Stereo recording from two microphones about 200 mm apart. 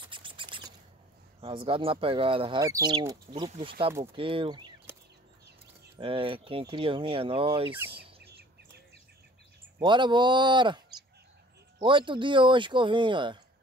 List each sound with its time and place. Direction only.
0.0 s a sound: 25° right (ahead or behind)
1.4 s speech: 25° right (ahead or behind)
5.9 s speech: 25° right (ahead or behind)
7.9 s bird: 55° right (ahead or behind)
9.8 s speech: 25° right (ahead or behind)
11.8 s speech: 25° right (ahead or behind)